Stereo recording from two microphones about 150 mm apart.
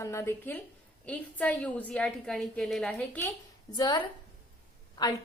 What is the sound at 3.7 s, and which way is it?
Speech, 25° left (ahead or behind).